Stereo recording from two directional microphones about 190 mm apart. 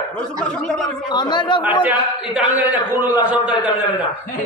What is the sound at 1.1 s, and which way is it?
Speech, 25° left (ahead or behind).